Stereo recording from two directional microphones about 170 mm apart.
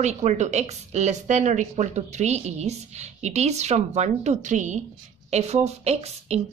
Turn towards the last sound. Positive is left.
turn(degrees=-40)  # may be behind; listen again after turning